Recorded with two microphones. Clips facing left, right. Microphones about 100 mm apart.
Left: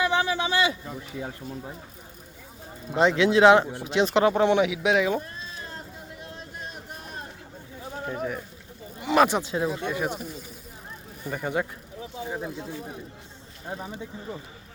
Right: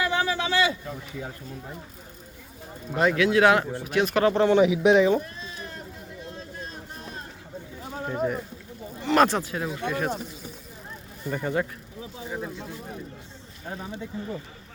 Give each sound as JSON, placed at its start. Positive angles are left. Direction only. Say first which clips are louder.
{"t": 0.0, "sound": "a sound", "louder": "left 1 dB", "side_deg": 20}
{"t": 2.9, "sound": "a man's voice", "louder": "left 1 dB", "side_deg": 20}
{"t": 4.6, "sound": "speech", "louder": "right 5 dB", "side_deg": 0}
{"t": 8.0, "sound": "speech", "louder": "right 4 dB", "side_deg": -5}
{"t": 9.0, "sound": "a sound", "louder": "even", "side_deg": 15}
{"t": 9.4, "sound": "a man's voice", "louder": "left 2 dB", "side_deg": 25}
{"t": 11.3, "sound": "speech", "louder": "right 1 dB", "side_deg": 10}